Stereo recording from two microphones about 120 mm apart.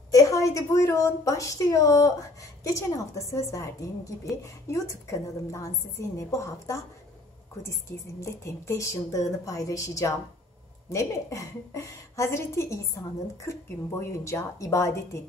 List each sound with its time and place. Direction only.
0.1 s a woman's voice: 25° left (ahead or behind)